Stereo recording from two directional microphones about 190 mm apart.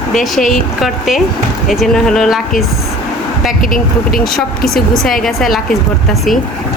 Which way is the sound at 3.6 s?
45° left (ahead or behind).